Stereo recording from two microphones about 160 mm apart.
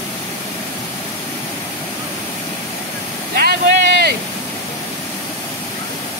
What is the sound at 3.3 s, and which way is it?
Vehicle, 80° right.